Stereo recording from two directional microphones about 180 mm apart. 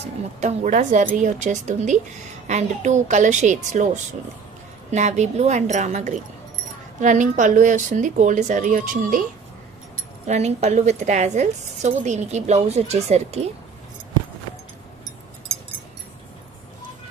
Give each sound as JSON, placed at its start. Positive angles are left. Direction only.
{"t": 0.3, "sound": "a woman's voice", "side_deg": -40}
{"t": 10.2, "sound": "a woman's voice", "side_deg": -40}